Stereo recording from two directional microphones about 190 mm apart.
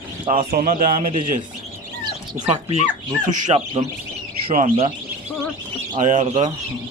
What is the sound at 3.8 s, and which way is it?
Speech, 25° right (ahead or behind).